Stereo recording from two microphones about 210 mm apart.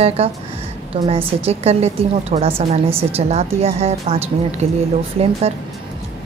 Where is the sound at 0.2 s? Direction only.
25° right (ahead or behind).